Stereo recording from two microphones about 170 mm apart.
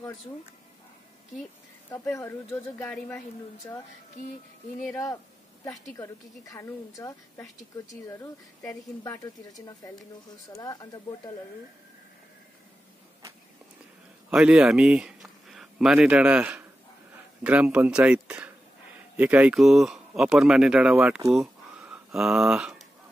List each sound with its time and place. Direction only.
1.9 s speech: 10° left (ahead or behind)
4.9 s a woman's voice: 15° left (ahead or behind)
14.3 s speech: 5° right (ahead or behind)
21.4 s a sound: 5° right (ahead or behind)